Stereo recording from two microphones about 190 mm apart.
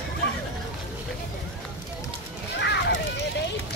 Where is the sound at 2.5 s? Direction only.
65° left (ahead or behind).